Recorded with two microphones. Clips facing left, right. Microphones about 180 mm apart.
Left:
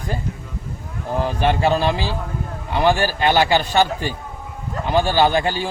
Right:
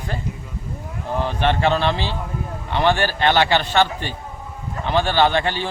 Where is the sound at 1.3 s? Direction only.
10° left (ahead or behind).